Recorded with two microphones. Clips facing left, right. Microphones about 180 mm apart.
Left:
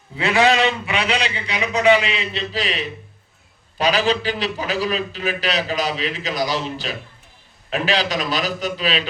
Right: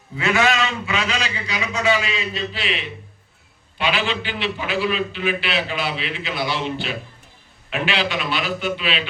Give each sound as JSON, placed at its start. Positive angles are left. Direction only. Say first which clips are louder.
{"t": 0.2, "sound": "a man's voice", "louder": "left 3 dB", "side_deg": 30}